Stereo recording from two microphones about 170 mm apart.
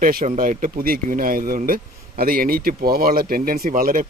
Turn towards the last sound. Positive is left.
turn(degrees=-55)  # may be behind; listen again after turning